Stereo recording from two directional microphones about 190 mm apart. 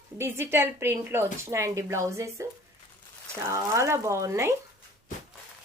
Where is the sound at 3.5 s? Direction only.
15° right (ahead or behind).